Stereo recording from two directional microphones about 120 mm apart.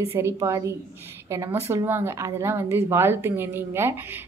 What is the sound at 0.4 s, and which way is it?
A woman's voice, 25° right (ahead or behind).